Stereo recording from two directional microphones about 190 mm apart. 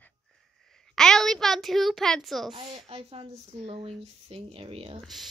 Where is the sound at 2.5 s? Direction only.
25° right (ahead or behind).